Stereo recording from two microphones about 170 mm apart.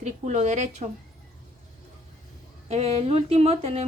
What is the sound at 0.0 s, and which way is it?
Speech, 45° right (ahead or behind).